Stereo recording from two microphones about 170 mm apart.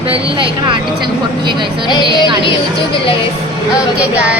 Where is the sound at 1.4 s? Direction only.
25° right (ahead or behind).